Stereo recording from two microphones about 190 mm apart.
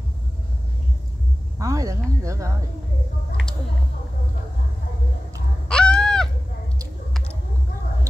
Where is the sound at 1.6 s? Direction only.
15° right (ahead or behind).